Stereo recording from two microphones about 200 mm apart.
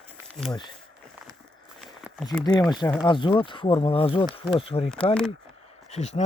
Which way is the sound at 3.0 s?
25° left (ahead or behind).